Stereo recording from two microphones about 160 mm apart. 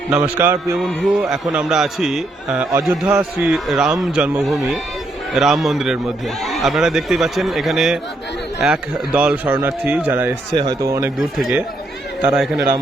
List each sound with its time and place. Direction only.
0.1 s speech: 10° right (ahead or behind)
0.8 s a man's voice: centre (ahead or behind)
10.5 s speech: 25° right (ahead or behind)
11.2 s a man's voice: centre (ahead or behind)